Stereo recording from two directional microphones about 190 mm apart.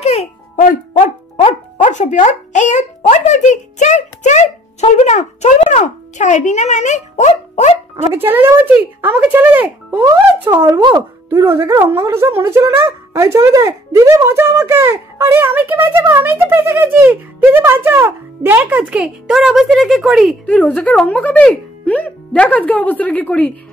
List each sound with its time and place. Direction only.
0.0 s music: 30° left (ahead or behind)
8.1 s speech: 10° right (ahead or behind); by 23.5 s 10° left (ahead or behind)